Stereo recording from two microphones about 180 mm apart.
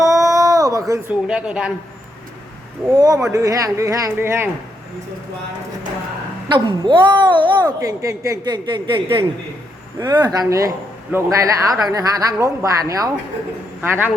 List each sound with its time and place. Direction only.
0.0 s a sound: 20° right (ahead or behind)
1.3 s a woman's voice: 5° right (ahead or behind)
3.0 s a woman's voice: 20° right (ahead or behind)
6.5 s a woman's voice: 25° right (ahead or behind); by 14.1 s 10° right (ahead or behind)